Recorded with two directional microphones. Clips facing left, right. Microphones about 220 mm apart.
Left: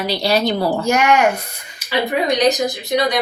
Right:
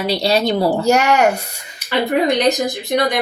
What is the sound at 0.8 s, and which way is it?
Speech, 40° right (ahead or behind).